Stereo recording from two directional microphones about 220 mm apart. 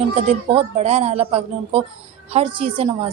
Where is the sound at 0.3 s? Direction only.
30° right (ahead or behind).